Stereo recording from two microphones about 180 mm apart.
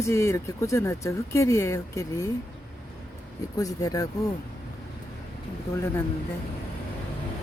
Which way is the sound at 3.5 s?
20° left (ahead or behind).